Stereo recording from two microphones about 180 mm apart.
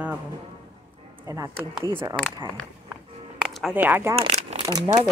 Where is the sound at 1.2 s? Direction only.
20° right (ahead or behind).